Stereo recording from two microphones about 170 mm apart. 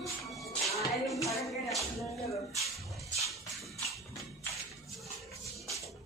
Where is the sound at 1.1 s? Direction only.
20° left (ahead or behind).